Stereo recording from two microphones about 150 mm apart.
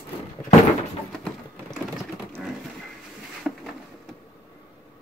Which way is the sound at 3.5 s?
Centre (ahead or behind).